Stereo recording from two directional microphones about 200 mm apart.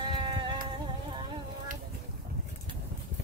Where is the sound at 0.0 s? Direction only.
25° right (ahead or behind).